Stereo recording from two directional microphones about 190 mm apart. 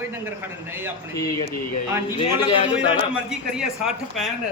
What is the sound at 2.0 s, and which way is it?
Speech, 25° left (ahead or behind).